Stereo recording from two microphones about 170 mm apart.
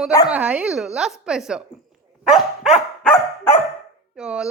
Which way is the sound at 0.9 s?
Centre (ahead or behind).